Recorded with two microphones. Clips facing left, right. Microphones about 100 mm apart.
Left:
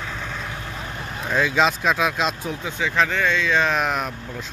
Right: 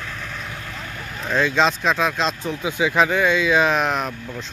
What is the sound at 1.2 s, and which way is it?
Speech, 5° left (ahead or behind).